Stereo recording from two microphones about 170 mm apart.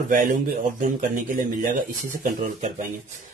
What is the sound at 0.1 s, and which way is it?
Speech, 50° right (ahead or behind).